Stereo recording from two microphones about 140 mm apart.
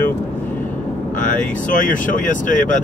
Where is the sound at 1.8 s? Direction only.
70° left (ahead or behind).